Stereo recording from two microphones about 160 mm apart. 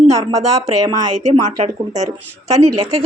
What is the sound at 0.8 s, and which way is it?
Speech, 25° right (ahead or behind).